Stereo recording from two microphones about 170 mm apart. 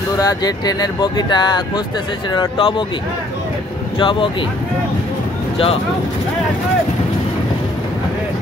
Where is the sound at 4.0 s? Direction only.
30° left (ahead or behind).